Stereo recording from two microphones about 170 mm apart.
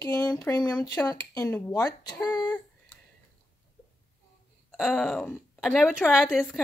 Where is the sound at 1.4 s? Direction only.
15° left (ahead or behind).